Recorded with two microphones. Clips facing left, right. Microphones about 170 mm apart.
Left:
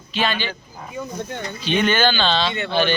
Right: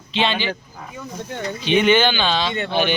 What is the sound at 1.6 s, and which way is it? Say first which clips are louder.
Speech: right 3 dB; 15° right (ahead or behind).